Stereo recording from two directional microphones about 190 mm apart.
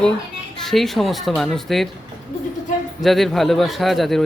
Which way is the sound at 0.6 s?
Centre (ahead or behind).